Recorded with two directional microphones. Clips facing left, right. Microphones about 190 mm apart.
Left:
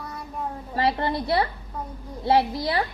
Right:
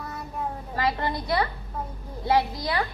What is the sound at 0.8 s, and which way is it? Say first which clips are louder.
A woman's voice: left 3 dB; 25° left (ahead or behind).